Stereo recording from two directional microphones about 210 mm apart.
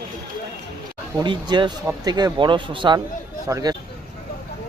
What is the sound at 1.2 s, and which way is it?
Speech, 20° right (ahead or behind).